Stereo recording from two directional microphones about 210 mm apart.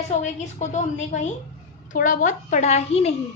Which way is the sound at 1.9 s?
40° left (ahead or behind).